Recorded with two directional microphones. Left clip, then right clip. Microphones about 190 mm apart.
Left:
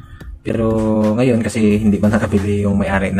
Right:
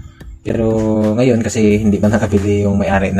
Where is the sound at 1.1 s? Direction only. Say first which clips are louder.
Right 2 dB; 20° right (ahead or behind).